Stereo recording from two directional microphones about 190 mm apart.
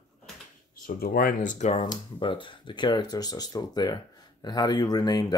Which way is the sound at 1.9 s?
25° left (ahead or behind).